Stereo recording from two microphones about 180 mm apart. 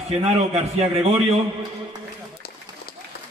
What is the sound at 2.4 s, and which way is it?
Run, 55° left (ahead or behind).